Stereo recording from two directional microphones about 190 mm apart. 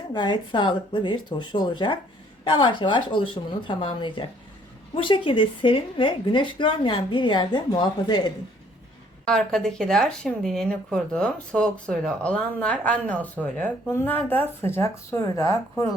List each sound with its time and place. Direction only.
0.1 s a woman's voice: 25° left (ahead or behind)
9.2 s speech: 5° left (ahead or behind)